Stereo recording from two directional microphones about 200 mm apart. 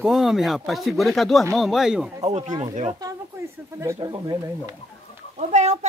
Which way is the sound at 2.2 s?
35° right (ahead or behind).